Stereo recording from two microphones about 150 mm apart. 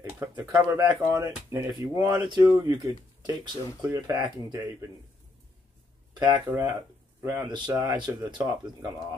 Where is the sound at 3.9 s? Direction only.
25° right (ahead or behind).